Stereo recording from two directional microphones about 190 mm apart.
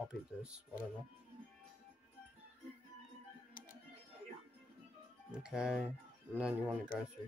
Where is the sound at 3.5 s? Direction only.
45° left (ahead or behind).